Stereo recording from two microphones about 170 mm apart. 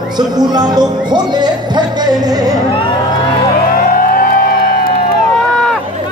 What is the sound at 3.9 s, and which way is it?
Music, 55° left (ahead or behind).